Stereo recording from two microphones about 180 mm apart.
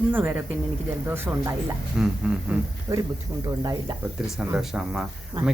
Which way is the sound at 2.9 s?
20° right (ahead or behind).